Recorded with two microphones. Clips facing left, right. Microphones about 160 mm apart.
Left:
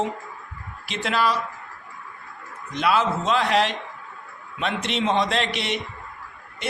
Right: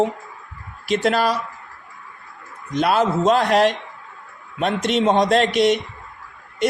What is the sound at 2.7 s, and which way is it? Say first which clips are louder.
A man's voice: right 4 dB; 40° right (ahead or behind).